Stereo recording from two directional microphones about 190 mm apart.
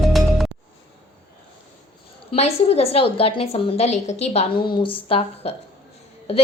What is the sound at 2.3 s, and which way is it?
A woman's voice, 35° left (ahead or behind).